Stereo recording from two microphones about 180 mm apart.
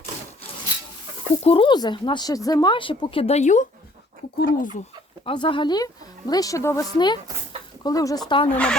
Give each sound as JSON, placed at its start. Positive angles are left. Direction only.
{"t": 1.5, "sound": "speech", "side_deg": 30}
{"t": 5.2, "sound": "speech", "side_deg": 30}
{"t": 8.5, "sound": "speech", "side_deg": 5}